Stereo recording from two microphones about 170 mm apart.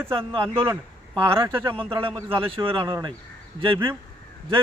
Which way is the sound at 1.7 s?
30° right (ahead or behind).